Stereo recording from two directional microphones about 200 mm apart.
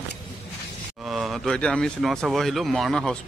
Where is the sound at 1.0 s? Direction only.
Centre (ahead or behind).